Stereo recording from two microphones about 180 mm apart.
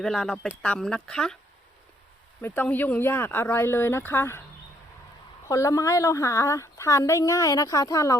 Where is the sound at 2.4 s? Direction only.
10° left (ahead or behind).